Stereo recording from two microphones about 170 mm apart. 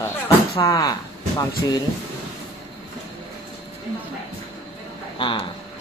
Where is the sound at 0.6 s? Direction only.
20° left (ahead or behind).